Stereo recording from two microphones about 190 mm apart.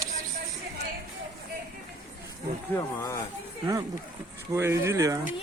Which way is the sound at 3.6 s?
15° right (ahead or behind).